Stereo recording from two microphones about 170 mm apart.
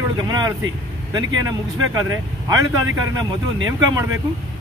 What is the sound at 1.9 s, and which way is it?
Speech, 20° right (ahead or behind).